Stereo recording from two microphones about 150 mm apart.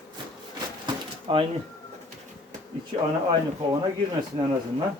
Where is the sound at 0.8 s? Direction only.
35° right (ahead or behind).